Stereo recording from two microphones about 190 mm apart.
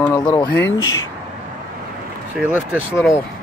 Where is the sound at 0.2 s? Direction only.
20° left (ahead or behind).